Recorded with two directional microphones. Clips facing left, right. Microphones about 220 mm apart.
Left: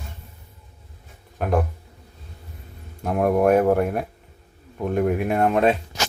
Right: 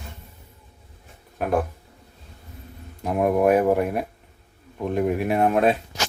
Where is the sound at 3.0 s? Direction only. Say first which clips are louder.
Left 1 dB; centre (ahead or behind).